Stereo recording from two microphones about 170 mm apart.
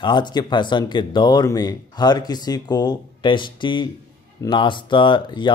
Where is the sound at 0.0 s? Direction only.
25° left (ahead or behind).